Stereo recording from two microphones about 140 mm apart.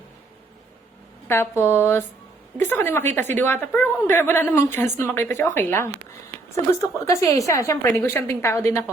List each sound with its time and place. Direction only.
1.3 s a woman's voice: 15° left (ahead or behind)
7.0 s a woman's voice: 20° left (ahead or behind)